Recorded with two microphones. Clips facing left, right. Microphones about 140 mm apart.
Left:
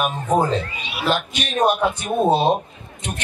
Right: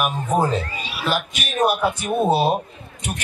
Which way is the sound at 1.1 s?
5° right (ahead or behind).